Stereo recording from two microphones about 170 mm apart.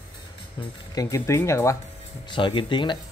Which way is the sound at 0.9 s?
15° left (ahead or behind).